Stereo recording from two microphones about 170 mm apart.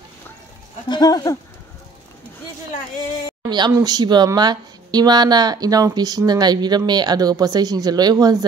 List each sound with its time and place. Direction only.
0.8 s speech: 25° left (ahead or behind)
3.4 s speech: 25° right (ahead or behind)